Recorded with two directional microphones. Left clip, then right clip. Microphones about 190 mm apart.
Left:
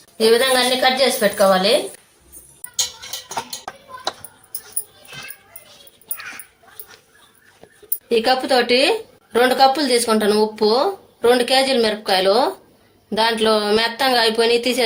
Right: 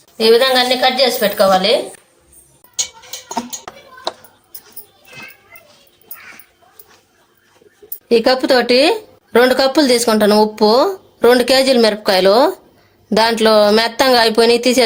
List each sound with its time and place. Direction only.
0.2 s a woman's voice: 5° right (ahead or behind)
3.2 s a sound: 10° right (ahead or behind)
8.1 s speech: 65° right (ahead or behind)